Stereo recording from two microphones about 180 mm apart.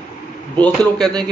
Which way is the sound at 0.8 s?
20° right (ahead or behind).